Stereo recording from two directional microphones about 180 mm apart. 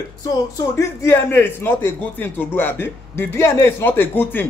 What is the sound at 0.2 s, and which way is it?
A man's voice, 20° left (ahead or behind).